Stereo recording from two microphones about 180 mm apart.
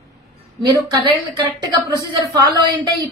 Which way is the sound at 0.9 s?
25° right (ahead or behind).